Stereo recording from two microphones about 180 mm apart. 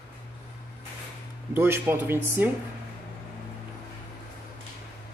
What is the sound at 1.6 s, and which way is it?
Speech, 10° right (ahead or behind).